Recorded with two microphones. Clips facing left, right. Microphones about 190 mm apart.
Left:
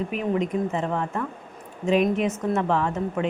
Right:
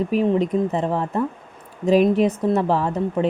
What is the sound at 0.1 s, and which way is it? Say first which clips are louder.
Speech: right 6 dB; 35° right (ahead or behind).